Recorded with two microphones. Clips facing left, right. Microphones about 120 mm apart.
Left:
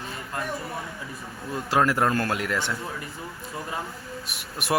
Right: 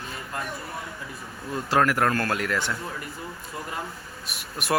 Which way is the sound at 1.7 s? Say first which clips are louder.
Even; 20° left (ahead or behind).